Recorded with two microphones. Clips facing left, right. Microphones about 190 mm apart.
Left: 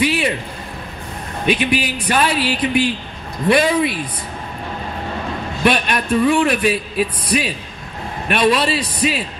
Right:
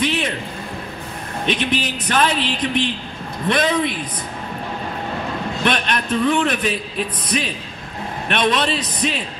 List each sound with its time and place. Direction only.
0.0 s a sound: 10° left (ahead or behind)
1.4 s a man's voice: 5° left (ahead or behind)
5.6 s a man's voice: 5° left (ahead or behind)